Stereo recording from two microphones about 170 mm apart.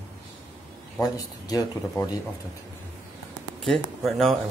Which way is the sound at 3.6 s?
Centre (ahead or behind).